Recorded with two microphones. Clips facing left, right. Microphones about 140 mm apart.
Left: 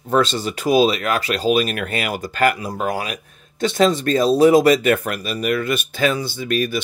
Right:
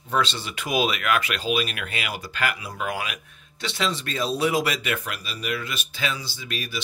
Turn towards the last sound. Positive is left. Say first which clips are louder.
# left 13 dB
turn(degrees=50)  # may be behind; listen again after turning